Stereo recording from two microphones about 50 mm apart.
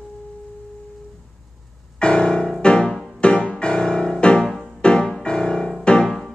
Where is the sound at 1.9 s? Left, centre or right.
Centre.